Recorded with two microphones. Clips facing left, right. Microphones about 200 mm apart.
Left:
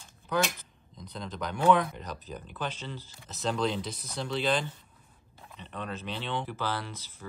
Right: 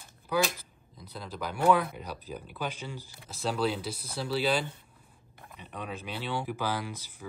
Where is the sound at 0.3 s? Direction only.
10° right (ahead or behind).